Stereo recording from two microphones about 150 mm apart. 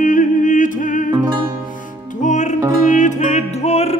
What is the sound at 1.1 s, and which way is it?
Music, 25° right (ahead or behind).